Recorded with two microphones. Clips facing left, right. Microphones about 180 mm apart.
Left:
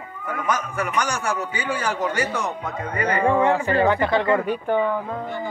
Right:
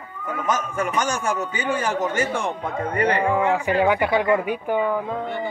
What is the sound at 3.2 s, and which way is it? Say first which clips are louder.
Speech: left 2 dB; 5° right (ahead or behind).